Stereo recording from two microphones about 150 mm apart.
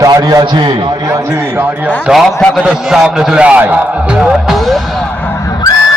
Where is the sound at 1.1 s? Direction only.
20° right (ahead or behind).